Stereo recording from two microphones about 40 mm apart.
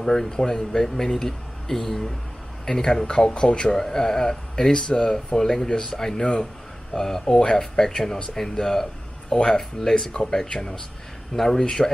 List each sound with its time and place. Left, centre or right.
0.0 s speech: centre